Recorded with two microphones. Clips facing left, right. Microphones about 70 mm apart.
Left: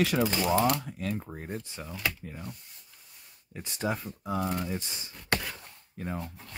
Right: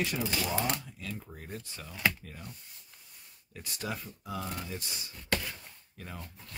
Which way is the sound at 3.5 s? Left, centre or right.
Left.